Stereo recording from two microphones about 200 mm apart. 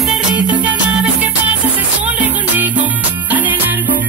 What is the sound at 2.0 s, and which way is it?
Music, 10° right (ahead or behind).